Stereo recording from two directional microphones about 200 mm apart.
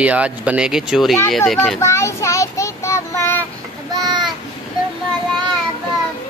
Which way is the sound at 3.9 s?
20° right (ahead or behind).